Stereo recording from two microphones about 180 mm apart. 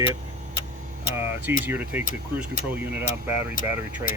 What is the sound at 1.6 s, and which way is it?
Speech, 10° right (ahead or behind).